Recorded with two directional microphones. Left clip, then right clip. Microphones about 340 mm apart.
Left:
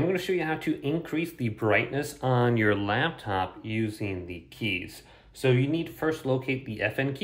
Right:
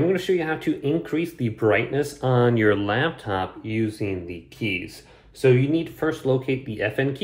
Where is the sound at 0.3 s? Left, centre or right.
Left.